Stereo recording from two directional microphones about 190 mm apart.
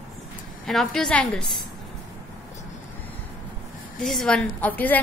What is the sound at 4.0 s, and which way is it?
A woman's voice, centre (ahead or behind).